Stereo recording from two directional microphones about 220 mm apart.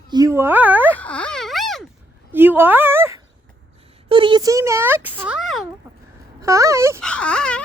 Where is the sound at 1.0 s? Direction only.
5° left (ahead or behind); by 3.2 s 10° right (ahead or behind).